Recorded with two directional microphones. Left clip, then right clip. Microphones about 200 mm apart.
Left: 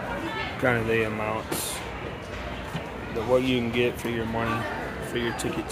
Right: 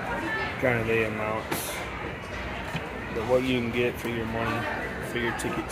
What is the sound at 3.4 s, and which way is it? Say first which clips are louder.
Speech: left 2 dB; 10° left (ahead or behind).